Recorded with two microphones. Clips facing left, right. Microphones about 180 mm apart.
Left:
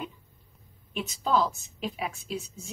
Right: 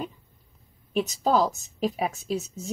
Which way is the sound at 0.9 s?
40° right (ahead or behind).